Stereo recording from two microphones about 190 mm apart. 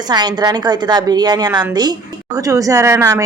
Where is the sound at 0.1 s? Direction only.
20° right (ahead or behind).